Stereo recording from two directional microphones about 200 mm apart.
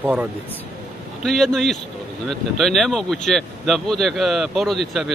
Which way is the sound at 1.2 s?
Centre (ahead or behind).